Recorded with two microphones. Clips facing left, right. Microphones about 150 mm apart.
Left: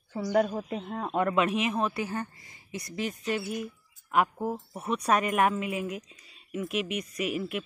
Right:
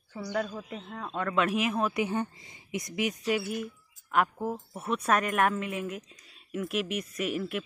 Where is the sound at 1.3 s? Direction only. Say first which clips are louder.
Left 1 dB; centre (ahead or behind).